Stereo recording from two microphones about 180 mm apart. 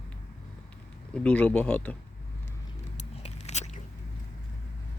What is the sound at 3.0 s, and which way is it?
Biting, 40° left (ahead or behind).